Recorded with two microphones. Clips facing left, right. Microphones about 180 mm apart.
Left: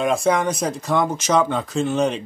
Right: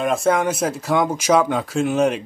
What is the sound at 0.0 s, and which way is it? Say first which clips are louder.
Speech: even; 5° right (ahead or behind).